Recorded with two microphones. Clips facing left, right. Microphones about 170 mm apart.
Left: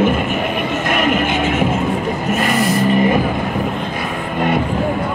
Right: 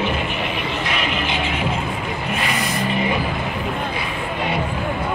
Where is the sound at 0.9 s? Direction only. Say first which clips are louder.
Left 10 dB; 50° left (ahead or behind).